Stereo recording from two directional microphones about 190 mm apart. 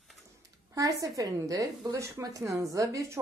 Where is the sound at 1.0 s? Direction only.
20° right (ahead or behind).